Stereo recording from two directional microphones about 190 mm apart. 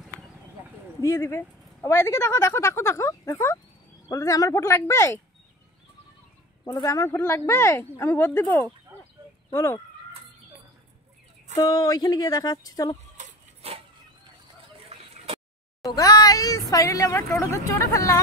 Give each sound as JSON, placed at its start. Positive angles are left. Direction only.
{"t": 1.0, "sound": "speech", "side_deg": 15}
{"t": 6.6, "sound": "speech", "side_deg": 20}
{"t": 11.5, "sound": "speech", "side_deg": 20}
{"t": 13.2, "sound": "a sound", "side_deg": -35}
{"t": 14.9, "sound": "a sound", "side_deg": -30}
{"t": 15.8, "sound": "speech", "side_deg": 20}